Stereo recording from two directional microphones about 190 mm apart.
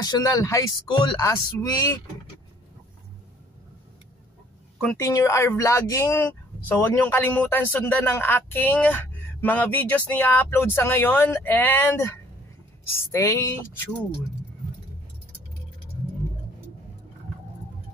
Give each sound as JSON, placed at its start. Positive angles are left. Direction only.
{"t": 0.0, "sound": "speech", "side_deg": 20}
{"t": 4.7, "sound": "speech", "side_deg": 10}
{"t": 13.1, "sound": "speech", "side_deg": 15}